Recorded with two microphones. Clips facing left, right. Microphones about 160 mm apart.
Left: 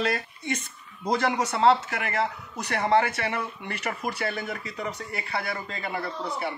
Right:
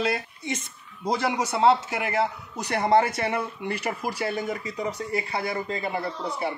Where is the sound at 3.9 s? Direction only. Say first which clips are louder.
Left 1 dB; 10° right (ahead or behind).